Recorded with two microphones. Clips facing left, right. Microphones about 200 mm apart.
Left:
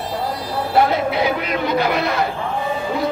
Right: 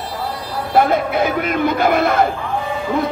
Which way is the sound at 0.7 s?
50° right (ahead or behind).